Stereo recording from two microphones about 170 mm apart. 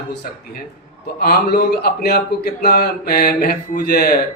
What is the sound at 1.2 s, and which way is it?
A man's voice, 65° left (ahead or behind).